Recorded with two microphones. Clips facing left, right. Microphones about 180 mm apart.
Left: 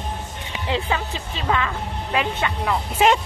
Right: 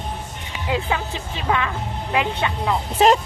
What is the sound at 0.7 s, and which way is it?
Speech, 15° right (ahead or behind).